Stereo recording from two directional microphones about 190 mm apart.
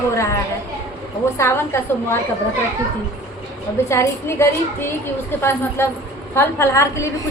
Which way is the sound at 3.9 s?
15° left (ahead or behind).